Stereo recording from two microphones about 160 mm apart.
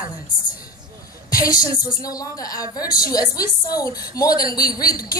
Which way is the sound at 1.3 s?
20° left (ahead or behind).